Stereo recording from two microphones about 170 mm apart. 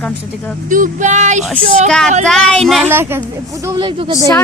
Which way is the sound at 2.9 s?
15° right (ahead or behind).